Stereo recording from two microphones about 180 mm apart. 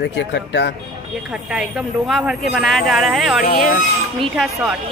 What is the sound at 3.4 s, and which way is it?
Speech, 55° left (ahead or behind).